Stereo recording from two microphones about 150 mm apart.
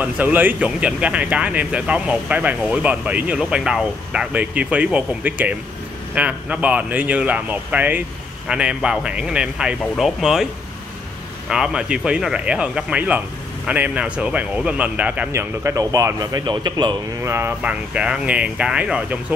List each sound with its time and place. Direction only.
0.0 s speech: 10° right (ahead or behind)